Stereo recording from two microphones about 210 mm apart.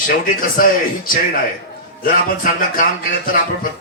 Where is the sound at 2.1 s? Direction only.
40° left (ahead or behind).